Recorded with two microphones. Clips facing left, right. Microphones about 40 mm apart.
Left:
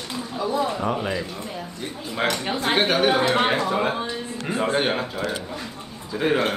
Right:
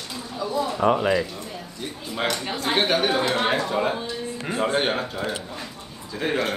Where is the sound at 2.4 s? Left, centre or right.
Left.